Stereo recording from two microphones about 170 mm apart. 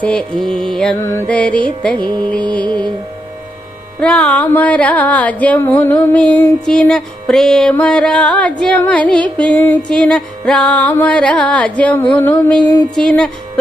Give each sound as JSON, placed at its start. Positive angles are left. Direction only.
{"t": 0.0, "sound": "mantra", "side_deg": 5}
{"t": 0.9, "sound": "music", "side_deg": 15}
{"t": 2.0, "sound": "music", "side_deg": -25}
{"t": 2.3, "sound": "music", "side_deg": 5}
{"t": 4.0, "sound": "music", "side_deg": 5}
{"t": 13.0, "sound": "mantra", "side_deg": 5}